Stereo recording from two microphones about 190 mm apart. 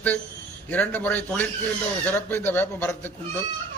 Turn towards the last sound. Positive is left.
turn(degrees=10)  # may be behind; listen again after turning